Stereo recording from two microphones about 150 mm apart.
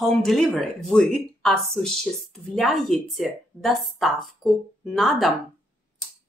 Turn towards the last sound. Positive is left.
turn(degrees=0)  # may be behind; listen again after turning